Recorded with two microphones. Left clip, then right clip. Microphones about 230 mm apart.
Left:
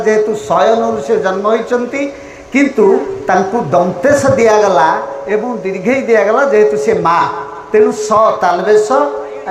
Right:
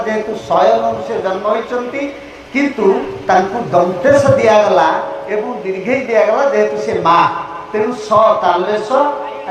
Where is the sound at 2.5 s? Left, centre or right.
Left.